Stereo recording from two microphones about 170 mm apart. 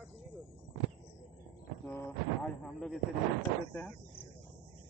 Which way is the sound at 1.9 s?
10° left (ahead or behind).